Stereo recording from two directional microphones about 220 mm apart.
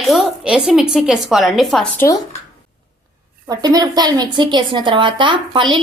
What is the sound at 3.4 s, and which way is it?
A woman's voice, 15° right (ahead or behind).